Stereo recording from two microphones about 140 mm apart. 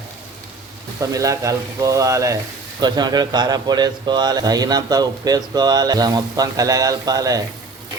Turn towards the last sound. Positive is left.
turn(degrees=-25)  # may be behind; listen again after turning